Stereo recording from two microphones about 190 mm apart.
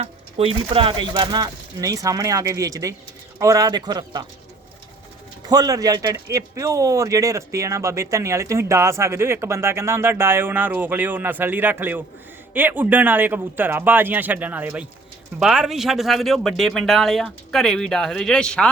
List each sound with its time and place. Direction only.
0.0 s speech: 30° right (ahead or behind)
5.5 s speech: 20° right (ahead or behind); by 18.7 s 5° left (ahead or behind)